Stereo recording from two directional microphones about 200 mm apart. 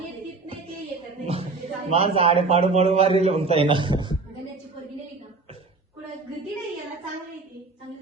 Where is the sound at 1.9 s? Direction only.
30° right (ahead or behind).